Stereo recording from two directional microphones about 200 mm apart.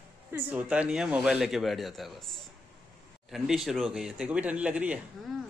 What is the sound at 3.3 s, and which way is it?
A woman's voice, centre (ahead or behind).